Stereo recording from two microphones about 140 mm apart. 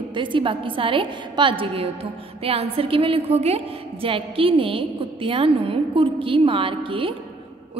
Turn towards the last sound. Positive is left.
turn(degrees=-40)  # may be behind; listen again after turning